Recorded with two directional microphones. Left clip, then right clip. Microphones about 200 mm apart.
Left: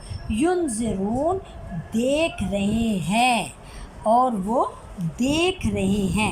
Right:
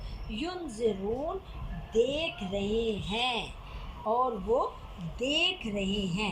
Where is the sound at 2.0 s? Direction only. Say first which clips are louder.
Left 6 dB; 65° left (ahead or behind).